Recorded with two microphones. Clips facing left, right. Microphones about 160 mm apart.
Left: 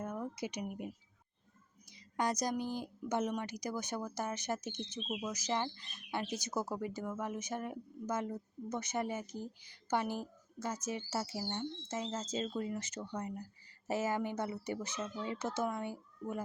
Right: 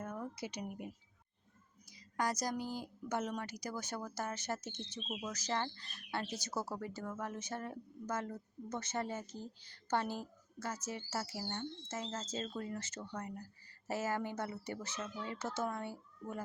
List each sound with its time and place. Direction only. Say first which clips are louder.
0.0 s a sound: left 3 dB; 15° left (ahead or behind)
2.1 s speech: left 2 dB; 20° left (ahead or behind)
5.0 s speech: left 3 dB; 5° left (ahead or behind)
5.3 s speech: left 1 dB; 15° left (ahead or behind)